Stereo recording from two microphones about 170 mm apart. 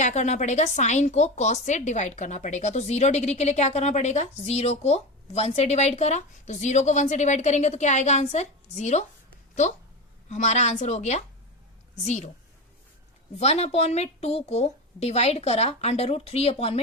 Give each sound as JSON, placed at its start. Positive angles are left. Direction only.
{"t": 0.0, "sound": "a woman's voice", "side_deg": 45}
{"t": 10.2, "sound": "a woman's voice", "side_deg": 45}
{"t": 13.3, "sound": "a woman's voice", "side_deg": 40}